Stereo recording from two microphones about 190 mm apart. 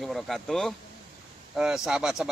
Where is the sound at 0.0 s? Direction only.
Centre (ahead or behind).